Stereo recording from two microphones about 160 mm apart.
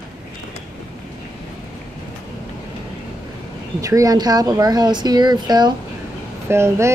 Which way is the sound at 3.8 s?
20° right (ahead or behind).